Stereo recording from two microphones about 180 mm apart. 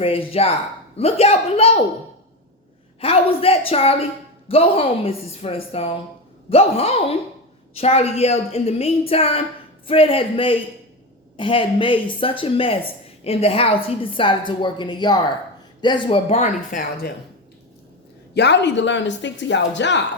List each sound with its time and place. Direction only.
0.0 s a woman's voice: 30° left (ahead or behind)
3.0 s a woman's voice: 30° left (ahead or behind)
18.3 s speech: 70° left (ahead or behind)